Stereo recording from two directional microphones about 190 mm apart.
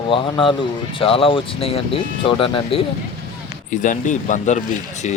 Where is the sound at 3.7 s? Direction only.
40° left (ahead or behind).